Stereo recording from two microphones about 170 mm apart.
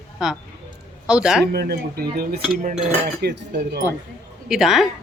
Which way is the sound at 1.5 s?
65° right (ahead or behind).